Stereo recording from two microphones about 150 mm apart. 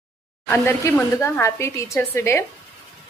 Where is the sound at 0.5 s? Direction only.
15° left (ahead or behind).